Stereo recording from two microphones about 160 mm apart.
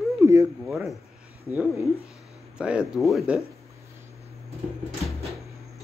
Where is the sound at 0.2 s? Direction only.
20° right (ahead or behind).